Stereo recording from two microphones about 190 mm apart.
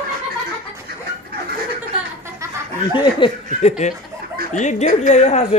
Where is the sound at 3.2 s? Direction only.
35° left (ahead or behind).